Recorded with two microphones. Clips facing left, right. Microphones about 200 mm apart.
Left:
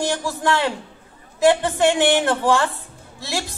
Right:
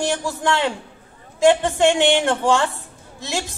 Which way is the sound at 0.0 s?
15° right (ahead or behind).